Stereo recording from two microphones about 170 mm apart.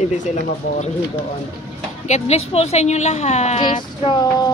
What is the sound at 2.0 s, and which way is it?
Speech, 40° left (ahead or behind).